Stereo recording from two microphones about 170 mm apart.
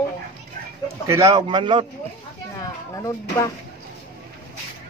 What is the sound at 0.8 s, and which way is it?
Speech, 15° right (ahead or behind).